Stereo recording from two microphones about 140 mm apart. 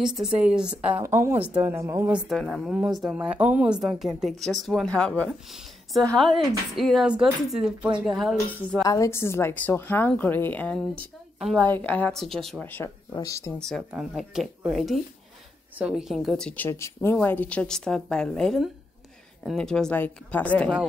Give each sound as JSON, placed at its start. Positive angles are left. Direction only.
{"t": 0.0, "sound": "speech", "side_deg": -5}
{"t": 1.0, "sound": "speech", "side_deg": -20}
{"t": 2.1, "sound": "speech", "side_deg": 0}
{"t": 3.3, "sound": "speech", "side_deg": -10}
{"t": 8.8, "sound": "a woman's voice", "side_deg": 25}
{"t": 13.6, "sound": "a woman's voice", "side_deg": 5}